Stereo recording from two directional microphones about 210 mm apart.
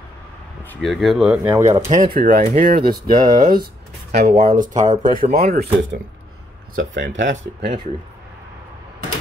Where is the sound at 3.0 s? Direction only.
20° right (ahead or behind).